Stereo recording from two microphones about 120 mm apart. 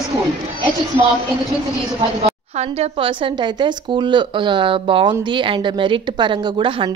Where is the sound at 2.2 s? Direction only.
60° right (ahead or behind).